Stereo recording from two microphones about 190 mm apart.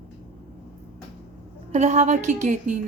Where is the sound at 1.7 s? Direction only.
35° right (ahead or behind).